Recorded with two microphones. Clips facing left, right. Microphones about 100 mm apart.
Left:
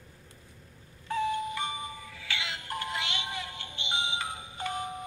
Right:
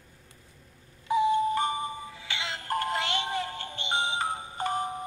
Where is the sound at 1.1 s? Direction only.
20° right (ahead or behind).